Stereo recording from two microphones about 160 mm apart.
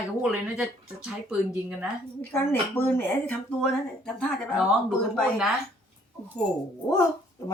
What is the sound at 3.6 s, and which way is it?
Speech, 5° left (ahead or behind).